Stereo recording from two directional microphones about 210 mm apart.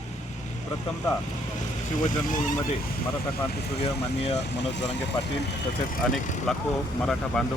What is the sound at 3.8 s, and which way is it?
Speech, 30° left (ahead or behind).